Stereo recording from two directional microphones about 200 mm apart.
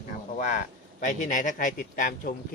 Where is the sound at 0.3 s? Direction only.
40° left (ahead or behind).